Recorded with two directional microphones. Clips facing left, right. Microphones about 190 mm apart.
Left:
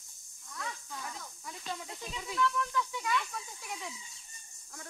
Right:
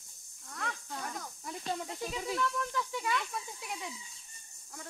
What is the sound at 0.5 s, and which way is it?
Snake, 55° right (ahead or behind).